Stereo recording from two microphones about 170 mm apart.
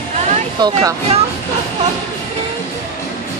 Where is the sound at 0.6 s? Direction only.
20° right (ahead or behind).